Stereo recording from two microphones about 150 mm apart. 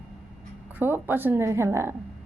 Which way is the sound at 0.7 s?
15° right (ahead or behind).